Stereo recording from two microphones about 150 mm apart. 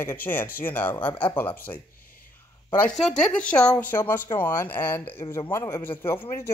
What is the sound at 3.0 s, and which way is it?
A man's voice, 5° left (ahead or behind).